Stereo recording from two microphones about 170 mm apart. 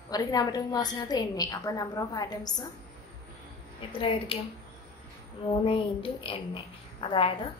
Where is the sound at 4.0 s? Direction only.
35° left (ahead or behind).